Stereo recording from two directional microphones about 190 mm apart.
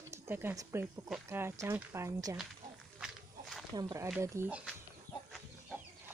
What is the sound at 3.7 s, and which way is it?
Speech, 20° right (ahead or behind).